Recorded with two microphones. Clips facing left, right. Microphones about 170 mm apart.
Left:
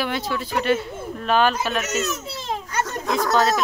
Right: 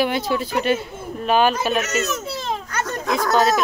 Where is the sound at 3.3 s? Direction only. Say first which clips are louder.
Right 2 dB; 15° right (ahead or behind).